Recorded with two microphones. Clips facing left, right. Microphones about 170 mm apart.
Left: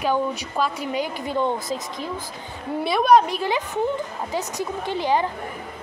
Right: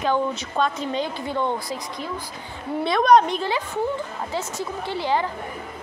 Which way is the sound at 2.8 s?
5° left (ahead or behind).